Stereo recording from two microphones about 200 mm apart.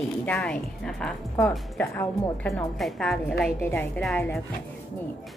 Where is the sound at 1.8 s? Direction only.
10° left (ahead or behind).